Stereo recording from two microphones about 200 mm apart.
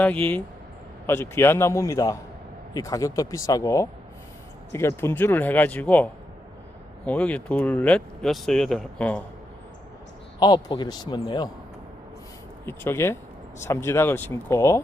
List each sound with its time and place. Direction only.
0.0 s a man's voice: 10° left (ahead or behind)
10.4 s a man's voice: 20° left (ahead or behind)
12.6 s a man's voice: 10° left (ahead or behind)